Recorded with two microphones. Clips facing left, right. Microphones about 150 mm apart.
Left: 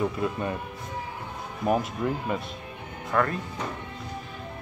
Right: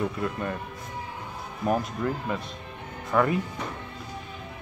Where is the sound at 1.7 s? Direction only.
5° left (ahead or behind).